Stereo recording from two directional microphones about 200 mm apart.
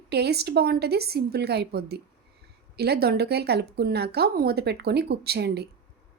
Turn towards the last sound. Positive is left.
turn(degrees=-55)  # may be behind; listen again after turning